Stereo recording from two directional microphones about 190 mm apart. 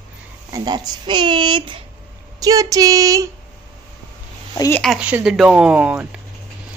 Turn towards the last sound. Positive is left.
turn(degrees=-5)  # may be behind; listen again after turning